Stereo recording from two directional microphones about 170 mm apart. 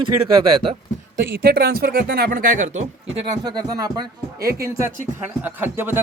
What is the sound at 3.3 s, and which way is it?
A man's voice, 25° right (ahead or behind).